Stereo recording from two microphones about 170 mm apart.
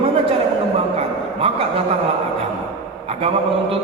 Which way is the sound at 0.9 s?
35° right (ahead or behind).